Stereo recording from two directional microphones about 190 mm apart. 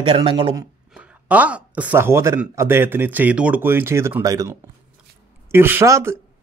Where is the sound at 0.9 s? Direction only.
5° right (ahead or behind).